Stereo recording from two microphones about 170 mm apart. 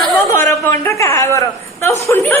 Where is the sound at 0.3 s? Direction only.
10° left (ahead or behind).